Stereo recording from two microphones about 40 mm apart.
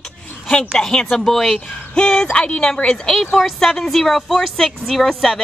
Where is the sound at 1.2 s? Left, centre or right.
Centre.